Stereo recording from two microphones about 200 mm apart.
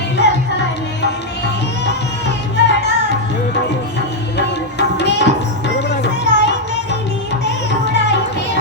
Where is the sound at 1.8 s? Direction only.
60° left (ahead or behind).